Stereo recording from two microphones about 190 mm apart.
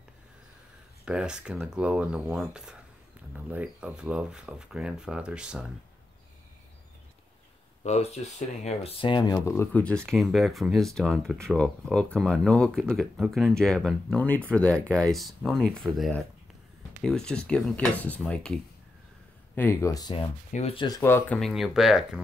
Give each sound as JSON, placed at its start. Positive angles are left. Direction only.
{"t": 1.0, "sound": "speech", "side_deg": -5}
{"t": 7.8, "sound": "speech", "side_deg": 35}
{"t": 21.4, "sound": "speech", "side_deg": 0}